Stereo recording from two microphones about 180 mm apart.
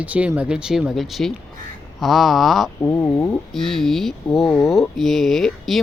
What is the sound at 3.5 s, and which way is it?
Speech, centre (ahead or behind).